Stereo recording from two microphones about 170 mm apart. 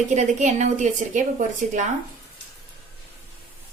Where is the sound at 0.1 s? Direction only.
45° right (ahead or behind).